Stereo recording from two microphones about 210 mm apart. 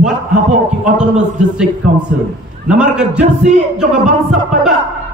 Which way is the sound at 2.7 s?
5° right (ahead or behind).